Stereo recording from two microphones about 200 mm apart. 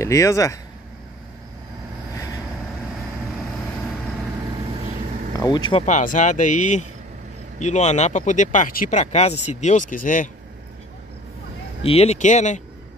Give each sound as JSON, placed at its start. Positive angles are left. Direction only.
{"t": 0.0, "sound": "speech", "side_deg": 15}
{"t": 5.4, "sound": "speech", "side_deg": 20}
{"t": 11.8, "sound": "speech", "side_deg": 30}